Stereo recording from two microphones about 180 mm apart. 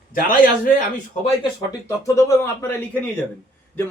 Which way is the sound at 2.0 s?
15° left (ahead or behind).